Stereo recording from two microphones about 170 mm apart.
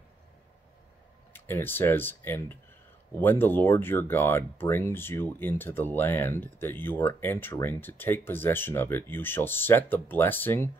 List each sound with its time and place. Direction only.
1.3 s speech: 10° left (ahead or behind)